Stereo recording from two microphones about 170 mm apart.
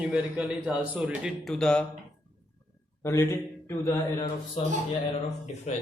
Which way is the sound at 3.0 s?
15° left (ahead or behind).